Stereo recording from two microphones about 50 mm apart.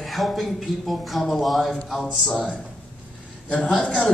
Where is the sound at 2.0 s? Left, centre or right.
Centre.